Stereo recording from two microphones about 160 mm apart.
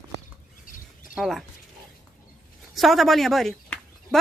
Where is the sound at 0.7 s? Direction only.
60° left (ahead or behind).